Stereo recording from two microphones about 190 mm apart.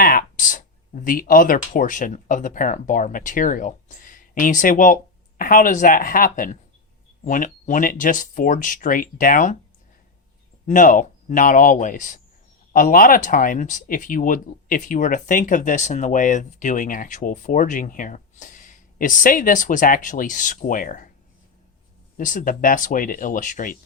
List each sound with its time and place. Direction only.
0.0 s speech: 50° left (ahead or behind)
10.7 s speech: 45° left (ahead or behind)
22.2 s speech: 45° left (ahead or behind)